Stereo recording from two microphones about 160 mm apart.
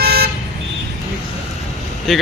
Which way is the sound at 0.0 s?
75° right (ahead or behind).